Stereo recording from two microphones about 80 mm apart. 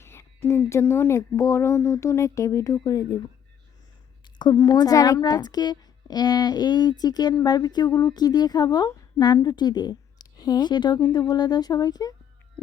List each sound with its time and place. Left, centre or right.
0.0 s a sound: left
0.7 s speech: left
2.7 s a woman's voice: left
4.6 s a woman's voice: left
5.2 s a woman's voice: left